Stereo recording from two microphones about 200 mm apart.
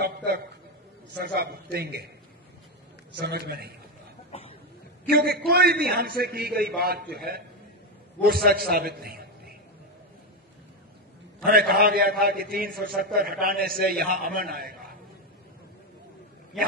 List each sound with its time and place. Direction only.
0.0 s a sound: 55° right (ahead or behind)
1.1 s a man's voice: 50° right (ahead or behind)
3.2 s a man's voice: 55° right (ahead or behind)
4.3 s a sound: 30° left (ahead or behind)
5.0 s a man's voice: 50° right (ahead or behind)
8.2 s a man's voice: 50° right (ahead or behind)
11.4 s a man's voice: 50° right (ahead or behind)